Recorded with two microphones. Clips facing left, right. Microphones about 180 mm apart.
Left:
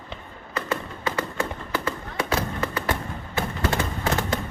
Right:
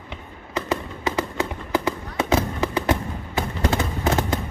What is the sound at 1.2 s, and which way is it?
Fireworks, 15° right (ahead or behind).